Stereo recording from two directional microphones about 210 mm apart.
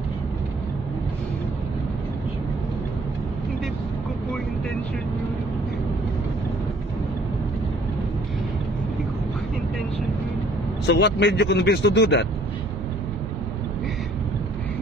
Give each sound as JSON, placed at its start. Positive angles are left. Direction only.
{"t": 10.9, "sound": "speech", "side_deg": 55}